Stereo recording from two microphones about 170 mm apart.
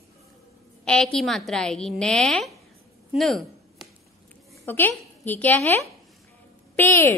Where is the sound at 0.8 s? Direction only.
5° left (ahead or behind).